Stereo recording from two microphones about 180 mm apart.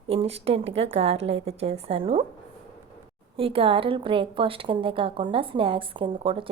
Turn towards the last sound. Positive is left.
turn(degrees=-30)  # may be behind; listen again after turning